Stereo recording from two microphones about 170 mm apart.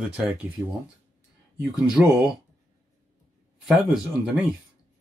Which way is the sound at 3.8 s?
Centre (ahead or behind).